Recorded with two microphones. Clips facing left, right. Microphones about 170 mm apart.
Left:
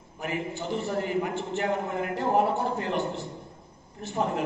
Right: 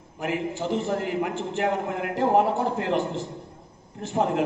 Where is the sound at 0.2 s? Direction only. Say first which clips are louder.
Right 4 dB; 90° right.